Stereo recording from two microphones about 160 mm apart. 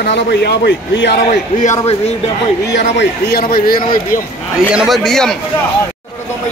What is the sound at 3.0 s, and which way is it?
Speech, 80° left.